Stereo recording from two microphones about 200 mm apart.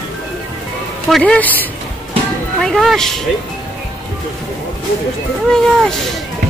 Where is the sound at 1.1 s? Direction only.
5° left (ahead or behind).